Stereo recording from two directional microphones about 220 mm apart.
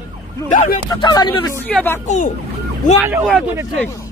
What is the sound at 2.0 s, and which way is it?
Speech, 35° left (ahead or behind).